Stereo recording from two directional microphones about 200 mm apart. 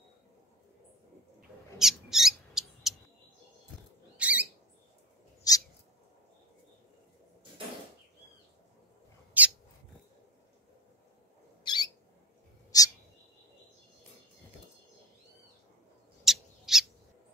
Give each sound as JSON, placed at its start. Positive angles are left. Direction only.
{"t": 1.8, "sound": "mouse", "side_deg": 0}
{"t": 4.2, "sound": "rodents", "side_deg": -5}
{"t": 5.5, "sound": "cat", "side_deg": 20}
{"t": 9.4, "sound": "owl", "side_deg": -10}
{"t": 11.6, "sound": "bird", "side_deg": 20}
{"t": 12.7, "sound": "owl", "side_deg": 20}
{"t": 16.3, "sound": "owl", "side_deg": 0}